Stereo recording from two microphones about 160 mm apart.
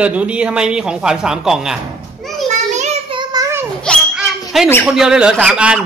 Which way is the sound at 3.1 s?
25° right (ahead or behind).